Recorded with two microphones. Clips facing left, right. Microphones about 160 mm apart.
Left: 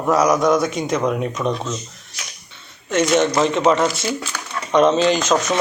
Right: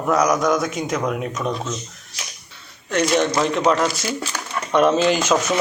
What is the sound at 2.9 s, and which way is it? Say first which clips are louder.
Speech: left 2 dB; centre (ahead or behind).